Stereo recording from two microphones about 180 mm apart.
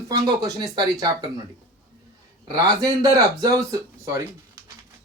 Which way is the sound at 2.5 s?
20° right (ahead or behind).